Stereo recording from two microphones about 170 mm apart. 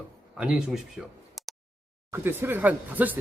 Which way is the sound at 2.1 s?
15° right (ahead or behind).